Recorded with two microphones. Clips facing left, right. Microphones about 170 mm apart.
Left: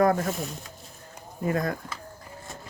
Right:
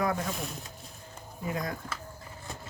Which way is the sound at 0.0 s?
50° left (ahead or behind).